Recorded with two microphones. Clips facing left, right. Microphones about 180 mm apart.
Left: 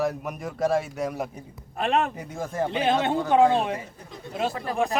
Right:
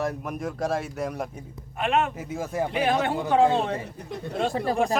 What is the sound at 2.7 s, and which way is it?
Speech, 25° left (ahead or behind).